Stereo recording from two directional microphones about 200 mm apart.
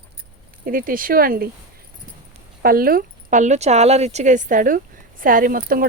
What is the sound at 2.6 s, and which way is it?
A woman's voice, 45° right (ahead or behind).